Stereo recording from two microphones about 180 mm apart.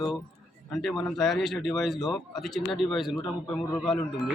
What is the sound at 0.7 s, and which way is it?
Speech, centre (ahead or behind).